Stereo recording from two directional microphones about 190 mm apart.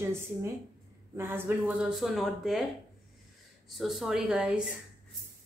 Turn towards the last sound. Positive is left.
turn(degrees=-5)  # may be behind; listen again after turning